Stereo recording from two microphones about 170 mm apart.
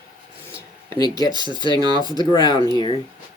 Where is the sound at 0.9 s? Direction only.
25° left (ahead or behind).